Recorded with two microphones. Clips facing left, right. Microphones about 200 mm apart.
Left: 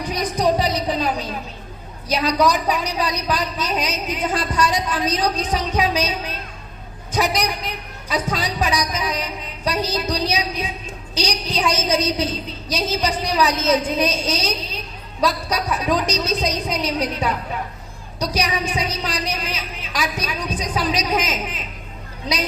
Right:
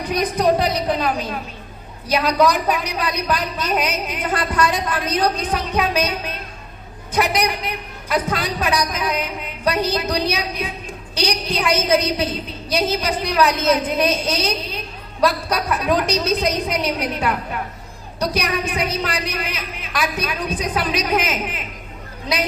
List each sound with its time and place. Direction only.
0.1 s a woman's voice: 55° right (ahead or behind)
2.1 s a woman's voice: 55° right (ahead or behind)